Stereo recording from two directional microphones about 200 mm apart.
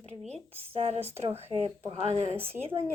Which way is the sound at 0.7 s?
30° right (ahead or behind).